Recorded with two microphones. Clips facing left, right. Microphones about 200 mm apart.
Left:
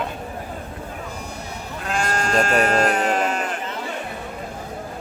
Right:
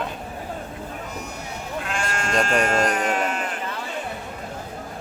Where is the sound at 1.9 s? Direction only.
40° left (ahead or behind).